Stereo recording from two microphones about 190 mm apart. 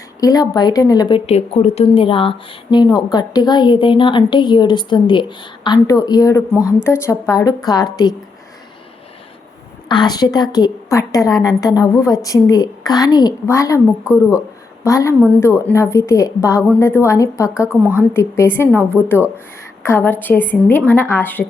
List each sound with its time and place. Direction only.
0.2 s a woman's voice: 20° left (ahead or behind)
9.9 s a woman's voice: 20° left (ahead or behind)
14.8 s a woman's voice: 15° left (ahead or behind)
17.7 s a woman's voice: 10° right (ahead or behind)
18.1 s a woman's voice: 15° left (ahead or behind)